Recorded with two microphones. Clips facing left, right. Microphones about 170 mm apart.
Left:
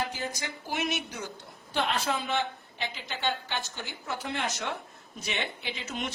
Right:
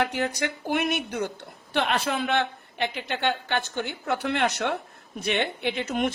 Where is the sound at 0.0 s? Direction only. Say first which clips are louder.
Right 8 dB; 65° right (ahead or behind).